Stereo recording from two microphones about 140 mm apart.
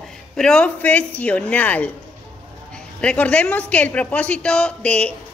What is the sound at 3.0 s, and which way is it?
A woman's voice, 10° left (ahead or behind).